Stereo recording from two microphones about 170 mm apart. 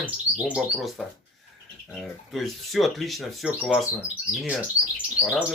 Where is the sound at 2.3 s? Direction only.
Centre (ahead or behind).